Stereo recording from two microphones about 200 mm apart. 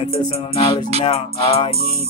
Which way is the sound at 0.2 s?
20° left (ahead or behind).